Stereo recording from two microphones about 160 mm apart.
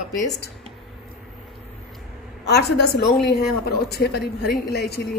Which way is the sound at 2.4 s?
90° left.